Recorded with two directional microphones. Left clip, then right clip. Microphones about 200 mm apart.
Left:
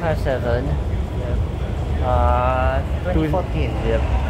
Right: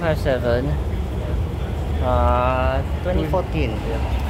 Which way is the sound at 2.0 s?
50° right (ahead or behind).